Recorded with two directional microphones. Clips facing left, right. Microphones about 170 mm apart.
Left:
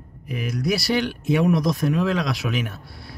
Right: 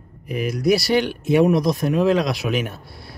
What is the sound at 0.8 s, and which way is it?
Speech, 30° right (ahead or behind).